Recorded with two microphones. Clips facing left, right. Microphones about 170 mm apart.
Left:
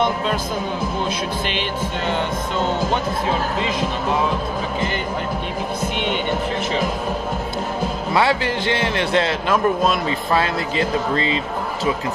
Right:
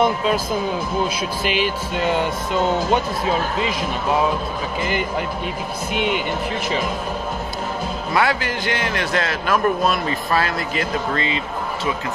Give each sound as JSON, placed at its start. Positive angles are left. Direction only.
{"t": 1.4, "sound": "music", "side_deg": -10}
{"t": 5.9, "sound": "music", "side_deg": -5}
{"t": 8.1, "sound": "speech", "side_deg": 25}